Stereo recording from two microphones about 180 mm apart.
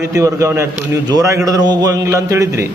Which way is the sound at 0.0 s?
15° right (ahead or behind).